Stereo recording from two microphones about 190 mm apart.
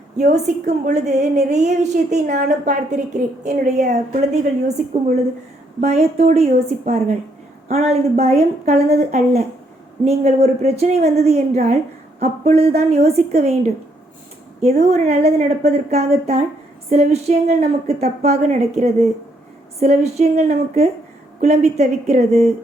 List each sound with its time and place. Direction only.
0.2 s a woman's voice: 40° right (ahead or behind)
5.8 s a woman's voice: 35° right (ahead or behind)
14.6 s a woman's voice: 35° right (ahead or behind)